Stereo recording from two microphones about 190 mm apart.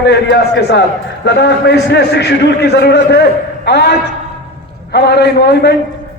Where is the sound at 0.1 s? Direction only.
60° left (ahead or behind).